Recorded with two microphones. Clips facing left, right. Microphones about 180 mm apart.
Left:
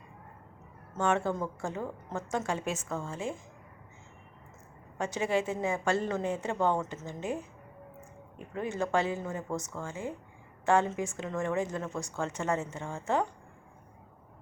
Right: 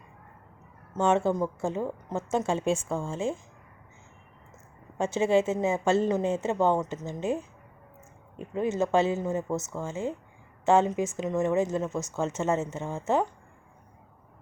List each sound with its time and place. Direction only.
0.9 s a woman's voice: 20° right (ahead or behind)
4.9 s a woman's voice: 25° right (ahead or behind)
8.5 s a woman's voice: 20° right (ahead or behind)